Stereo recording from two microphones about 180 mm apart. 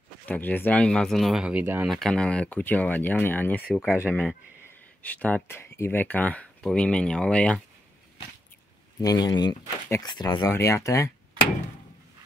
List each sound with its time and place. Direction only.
0.3 s speech: 10° left (ahead or behind); by 2.0 s 10° right (ahead or behind)
2.0 s speech: 5° left (ahead or behind)
9.0 s speech: 20° left (ahead or behind)